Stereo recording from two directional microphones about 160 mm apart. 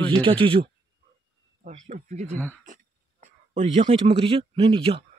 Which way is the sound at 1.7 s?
45° right (ahead or behind).